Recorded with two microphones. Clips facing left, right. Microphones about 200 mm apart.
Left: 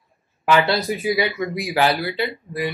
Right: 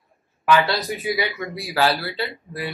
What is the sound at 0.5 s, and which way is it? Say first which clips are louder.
Speech: left 1 dB; 25° left (ahead or behind).